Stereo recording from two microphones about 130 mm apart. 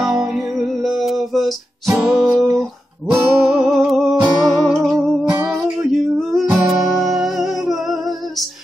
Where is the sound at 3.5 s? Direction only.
Centre (ahead or behind).